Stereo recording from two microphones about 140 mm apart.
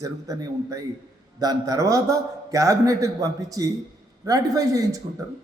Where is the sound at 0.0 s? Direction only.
25° right (ahead or behind).